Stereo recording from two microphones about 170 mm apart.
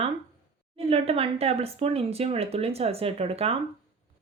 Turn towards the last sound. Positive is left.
turn(degrees=-35)  # may be behind; listen again after turning